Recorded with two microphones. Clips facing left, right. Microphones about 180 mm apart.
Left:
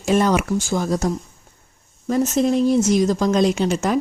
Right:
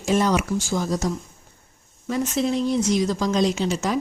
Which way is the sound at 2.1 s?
40° left (ahead or behind).